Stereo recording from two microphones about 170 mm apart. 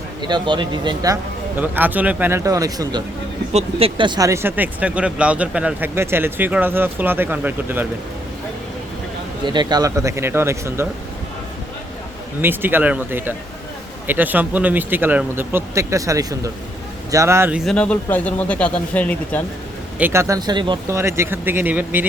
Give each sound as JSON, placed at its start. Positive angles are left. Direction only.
{"t": 0.2, "sound": "a man's voice", "side_deg": -25}
{"t": 3.5, "sound": "speech", "side_deg": -35}
{"t": 9.5, "sound": "speech", "side_deg": -25}
{"t": 12.4, "sound": "speech", "side_deg": -10}
{"t": 17.7, "sound": "speech", "side_deg": 5}
{"t": 20.0, "sound": "a man's voice", "side_deg": -15}
{"t": 21.0, "sound": "speech", "side_deg": -15}